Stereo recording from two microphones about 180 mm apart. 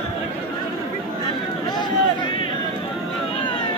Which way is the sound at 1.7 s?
25° left (ahead or behind).